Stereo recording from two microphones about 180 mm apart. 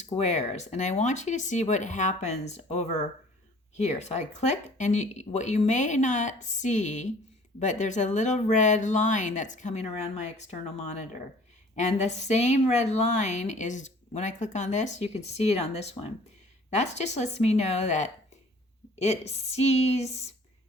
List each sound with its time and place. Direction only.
0.0 s speech: 40° left (ahead or behind)
11.7 s speech: 40° left (ahead or behind)